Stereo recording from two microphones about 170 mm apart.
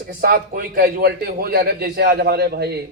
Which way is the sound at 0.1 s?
60° right (ahead or behind).